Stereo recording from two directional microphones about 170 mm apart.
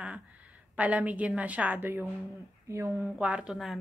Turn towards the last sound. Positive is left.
turn(degrees=0)  # may be behind; listen again after turning